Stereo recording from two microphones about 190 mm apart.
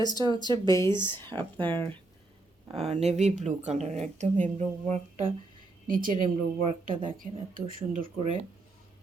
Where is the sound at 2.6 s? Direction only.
30° right (ahead or behind).